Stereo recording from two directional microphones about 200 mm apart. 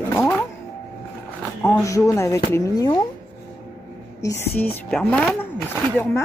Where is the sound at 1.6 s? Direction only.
15° left (ahead or behind).